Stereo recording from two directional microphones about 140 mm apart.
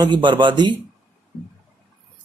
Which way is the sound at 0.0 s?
35° right (ahead or behind).